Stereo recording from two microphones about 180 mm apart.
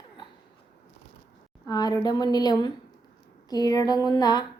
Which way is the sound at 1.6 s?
20° left (ahead or behind).